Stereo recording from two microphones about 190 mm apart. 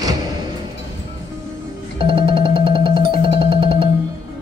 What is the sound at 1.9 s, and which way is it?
Music, 30° right (ahead or behind).